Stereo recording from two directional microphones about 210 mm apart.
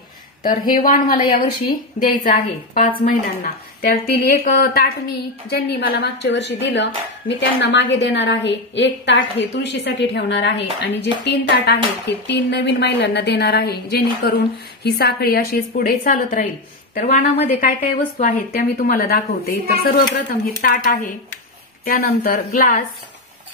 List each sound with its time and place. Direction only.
0.4 s speech: 40° left (ahead or behind)